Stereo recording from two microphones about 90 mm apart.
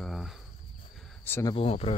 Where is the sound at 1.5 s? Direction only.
90° left.